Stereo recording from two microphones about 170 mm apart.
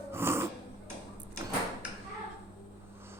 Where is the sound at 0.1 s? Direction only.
15° right (ahead or behind).